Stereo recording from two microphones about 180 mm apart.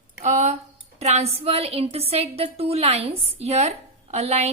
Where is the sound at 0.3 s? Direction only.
40° right (ahead or behind).